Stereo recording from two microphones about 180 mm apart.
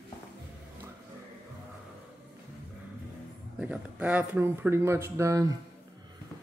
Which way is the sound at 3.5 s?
5° right (ahead or behind).